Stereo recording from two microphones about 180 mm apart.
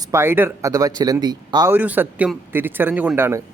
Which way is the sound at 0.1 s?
15° right (ahead or behind).